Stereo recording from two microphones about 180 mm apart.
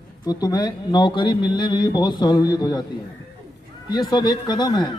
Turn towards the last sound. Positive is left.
turn(degrees=25)  # may be behind; listen again after turning